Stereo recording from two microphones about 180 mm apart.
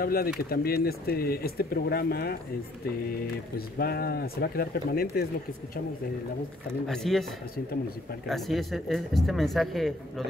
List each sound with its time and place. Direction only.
0.0 s speech: 55° left (ahead or behind)
3.5 s speech: 60° left (ahead or behind)
6.9 s speech: centre (ahead or behind)
8.3 s speech: centre (ahead or behind)